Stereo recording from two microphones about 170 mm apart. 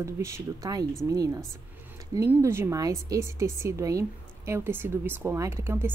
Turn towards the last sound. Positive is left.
turn(degrees=-15)  # may be behind; listen again after turning